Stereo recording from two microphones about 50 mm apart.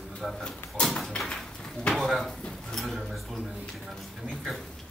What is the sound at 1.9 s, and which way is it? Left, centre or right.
Speech, centre.